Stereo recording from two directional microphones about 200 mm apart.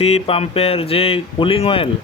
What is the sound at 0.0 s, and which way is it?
Speech, 30° left (ahead or behind).